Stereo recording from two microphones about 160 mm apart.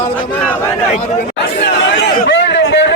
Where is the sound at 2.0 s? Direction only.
90° left.